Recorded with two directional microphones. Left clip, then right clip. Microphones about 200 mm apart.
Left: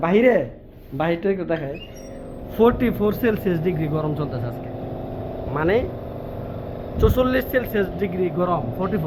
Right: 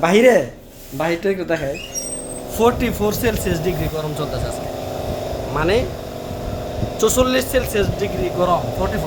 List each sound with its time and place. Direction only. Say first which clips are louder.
0.0 s speech: right 4 dB; 20° right (ahead or behind)
2.6 s speech: right 1 dB; 5° right (ahead or behind)
5.5 s speech: right 2 dB; 5° right (ahead or behind)
7.0 s speech: right 3 dB; 10° right (ahead or behind)